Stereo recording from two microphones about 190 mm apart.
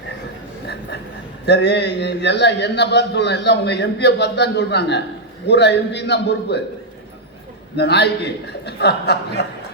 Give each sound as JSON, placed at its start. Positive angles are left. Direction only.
{"t": 1.5, "sound": "a man's voice", "side_deg": 60}
{"t": 7.8, "sound": "a man's voice", "side_deg": 60}